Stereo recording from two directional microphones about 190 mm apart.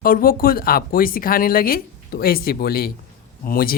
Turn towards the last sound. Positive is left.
turn(degrees=50)  # may be behind; listen again after turning